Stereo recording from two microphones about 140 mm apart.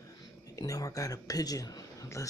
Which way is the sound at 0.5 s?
25° left (ahead or behind).